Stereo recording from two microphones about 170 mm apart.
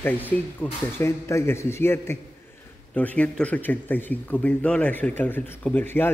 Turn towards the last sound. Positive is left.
turn(degrees=10)  # may be behind; listen again after turning